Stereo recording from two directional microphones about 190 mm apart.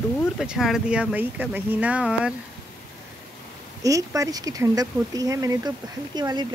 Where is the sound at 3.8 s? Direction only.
15° right (ahead or behind).